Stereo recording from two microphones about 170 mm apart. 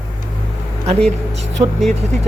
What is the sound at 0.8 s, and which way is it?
Speech, 40° right (ahead or behind).